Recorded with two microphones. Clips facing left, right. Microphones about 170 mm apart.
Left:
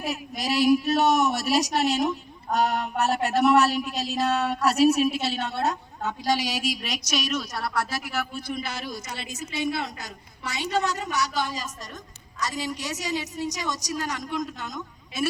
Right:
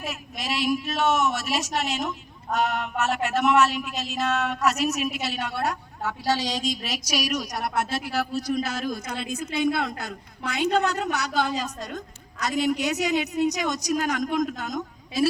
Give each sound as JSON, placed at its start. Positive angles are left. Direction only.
{"t": 0.0, "sound": "a woman's voice", "side_deg": 35}
{"t": 6.9, "sound": "a woman's voice", "side_deg": -10}